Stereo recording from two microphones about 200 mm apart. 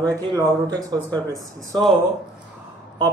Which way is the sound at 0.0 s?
15° right (ahead or behind).